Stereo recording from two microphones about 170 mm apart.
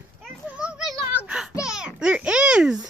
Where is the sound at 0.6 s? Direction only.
5° right (ahead or behind).